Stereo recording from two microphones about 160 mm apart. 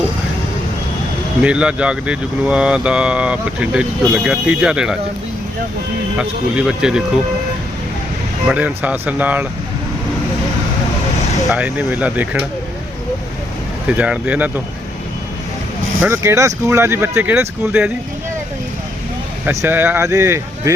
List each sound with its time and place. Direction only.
1.4 s speech: 5° right (ahead or behind)
6.1 s speech: 5° right (ahead or behind)
8.4 s speech: 10° right (ahead or behind)
11.5 s speech: 10° right (ahead or behind)
13.8 s speech: 10° right (ahead or behind)
16.0 s speech: 15° right (ahead or behind)
19.5 s speech: 15° right (ahead or behind)